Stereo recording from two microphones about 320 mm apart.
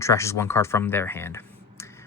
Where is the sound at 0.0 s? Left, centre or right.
Centre.